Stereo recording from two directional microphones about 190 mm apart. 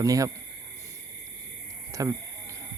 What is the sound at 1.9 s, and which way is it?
Speech, 15° right (ahead or behind).